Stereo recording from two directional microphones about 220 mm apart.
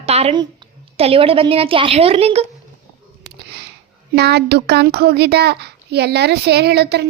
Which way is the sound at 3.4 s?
50° right (ahead or behind).